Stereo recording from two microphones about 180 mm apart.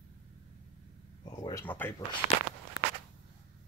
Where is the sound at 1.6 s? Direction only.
10° left (ahead or behind).